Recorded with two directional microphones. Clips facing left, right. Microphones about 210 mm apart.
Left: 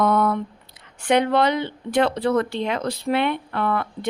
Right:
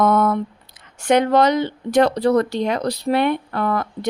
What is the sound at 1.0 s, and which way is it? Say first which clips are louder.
Speech: right 3 dB; 45° right (ahead or behind).